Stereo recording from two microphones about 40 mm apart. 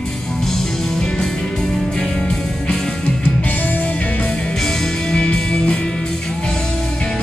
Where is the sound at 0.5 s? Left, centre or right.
Centre.